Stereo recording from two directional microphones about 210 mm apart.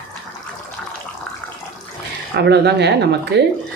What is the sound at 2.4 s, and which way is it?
Speech, 50° right (ahead or behind).